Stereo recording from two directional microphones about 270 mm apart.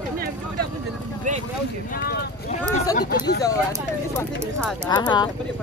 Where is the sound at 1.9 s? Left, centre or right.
Left.